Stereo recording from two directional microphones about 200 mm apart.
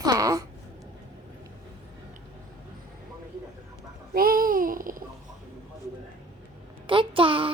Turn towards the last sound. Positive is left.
turn(degrees=-25)  # may be behind; listen again after turning